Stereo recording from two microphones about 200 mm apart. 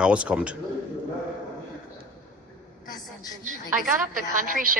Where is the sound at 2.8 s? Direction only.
20° left (ahead or behind).